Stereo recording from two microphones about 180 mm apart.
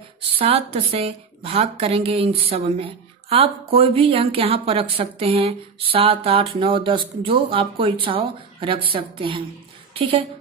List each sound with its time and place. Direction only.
0.3 s a woman's voice: 30° right (ahead or behind)